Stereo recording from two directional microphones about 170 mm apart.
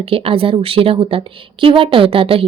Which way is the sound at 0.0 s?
35° right (ahead or behind).